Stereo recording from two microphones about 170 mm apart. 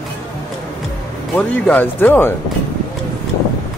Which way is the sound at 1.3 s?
10° left (ahead or behind).